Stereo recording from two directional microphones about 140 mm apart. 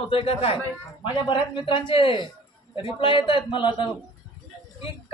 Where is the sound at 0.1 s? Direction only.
40° left (ahead or behind).